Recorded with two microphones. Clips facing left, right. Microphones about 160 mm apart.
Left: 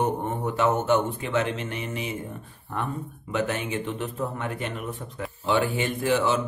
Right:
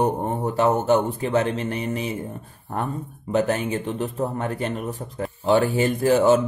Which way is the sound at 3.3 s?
40° right (ahead or behind).